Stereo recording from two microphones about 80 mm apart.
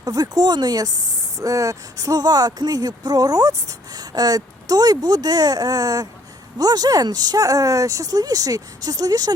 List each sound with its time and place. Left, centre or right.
0.0 s speech: right
1.4 s speech: right